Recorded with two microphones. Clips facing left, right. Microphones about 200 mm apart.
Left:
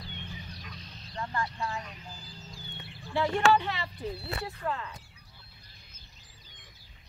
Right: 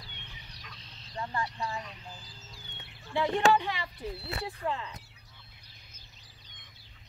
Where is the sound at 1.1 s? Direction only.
15° right (ahead or behind).